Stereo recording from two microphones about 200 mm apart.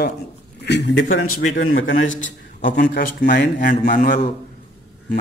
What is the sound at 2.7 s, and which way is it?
A man's voice, 55° left (ahead or behind).